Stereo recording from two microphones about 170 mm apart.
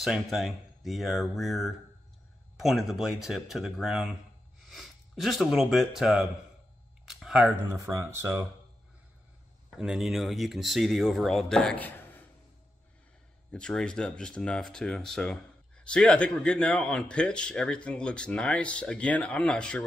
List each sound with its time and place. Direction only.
0.0 s speech: centre (ahead or behind)
7.1 s a sound: centre (ahead or behind)
7.7 s speech: 20° right (ahead or behind)
9.7 s speech: 5° right (ahead or behind)
13.5 s speech: 5° left (ahead or behind)